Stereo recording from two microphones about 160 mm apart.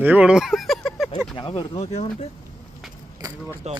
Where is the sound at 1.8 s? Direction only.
45° left (ahead or behind).